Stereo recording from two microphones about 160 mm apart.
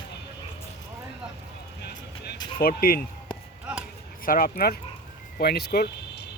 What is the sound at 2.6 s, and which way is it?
Speech, 70° left (ahead or behind).